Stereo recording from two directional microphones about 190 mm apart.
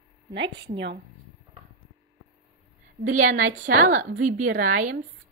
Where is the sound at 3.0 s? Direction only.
45° right (ahead or behind).